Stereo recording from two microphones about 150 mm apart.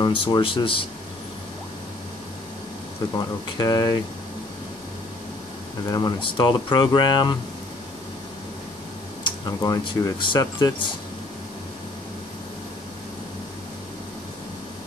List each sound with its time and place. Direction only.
0.0 s speech: 30° left (ahead or behind)
3.2 s speech: 25° left (ahead or behind)
5.9 s speech: 25° left (ahead or behind)
9.2 s speech: 25° left (ahead or behind)